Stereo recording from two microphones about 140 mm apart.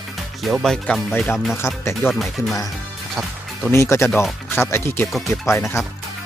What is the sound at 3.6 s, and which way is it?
Speech, 20° left (ahead or behind).